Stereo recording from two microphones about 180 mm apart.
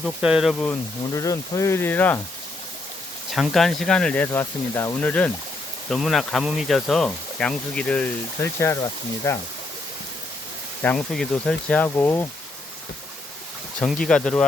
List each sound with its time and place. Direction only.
0.0 s speech: 5° right (ahead or behind)
0.7 s speech: 20° left (ahead or behind)
3.3 s speech: centre (ahead or behind)
10.8 s speech: centre (ahead or behind)
13.7 s speech: 5° left (ahead or behind)